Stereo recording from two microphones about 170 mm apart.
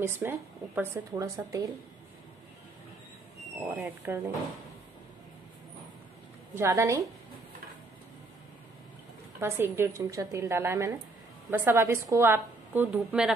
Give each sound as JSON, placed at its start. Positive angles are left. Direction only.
{"t": 0.0, "sound": "a woman's voice", "side_deg": -10}
{"t": 3.5, "sound": "a woman's voice", "side_deg": -10}
{"t": 6.5, "sound": "a woman's voice", "side_deg": -15}
{"t": 9.4, "sound": "a woman's voice", "side_deg": -15}